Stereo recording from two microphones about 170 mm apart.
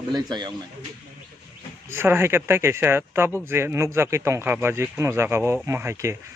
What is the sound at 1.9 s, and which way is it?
Speech, 15° right (ahead or behind).